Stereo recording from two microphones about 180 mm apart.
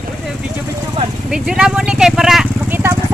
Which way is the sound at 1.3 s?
5° right (ahead or behind).